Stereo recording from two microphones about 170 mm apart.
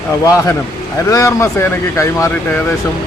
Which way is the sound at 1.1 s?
20° left (ahead or behind).